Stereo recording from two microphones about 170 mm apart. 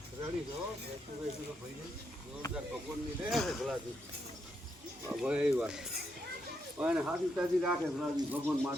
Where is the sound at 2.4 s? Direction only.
20° left (ahead or behind).